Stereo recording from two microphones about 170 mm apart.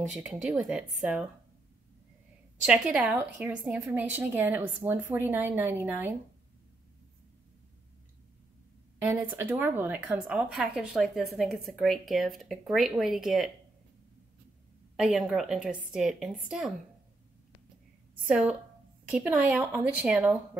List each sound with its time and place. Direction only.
0.1 s speech: 5° right (ahead or behind)
2.6 s a woman's voice: 5° right (ahead or behind)
9.1 s a woman's voice: 10° right (ahead or behind)
15.0 s speech: 5° right (ahead or behind)
18.2 s a woman's voice: 10° right (ahead or behind)